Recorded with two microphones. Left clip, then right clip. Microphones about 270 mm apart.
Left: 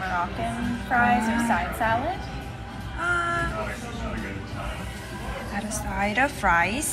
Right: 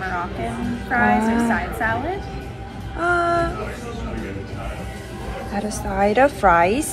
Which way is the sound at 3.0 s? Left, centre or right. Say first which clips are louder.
Right 6 dB; centre.